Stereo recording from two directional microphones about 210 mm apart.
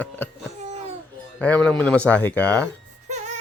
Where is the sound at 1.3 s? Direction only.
5° left (ahead or behind).